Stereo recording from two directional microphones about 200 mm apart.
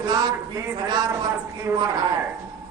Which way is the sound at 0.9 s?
20° right (ahead or behind).